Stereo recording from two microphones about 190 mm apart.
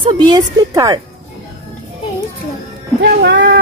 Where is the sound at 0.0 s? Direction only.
20° right (ahead or behind).